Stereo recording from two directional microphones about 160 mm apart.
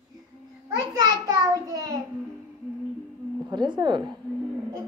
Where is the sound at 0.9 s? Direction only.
25° right (ahead or behind).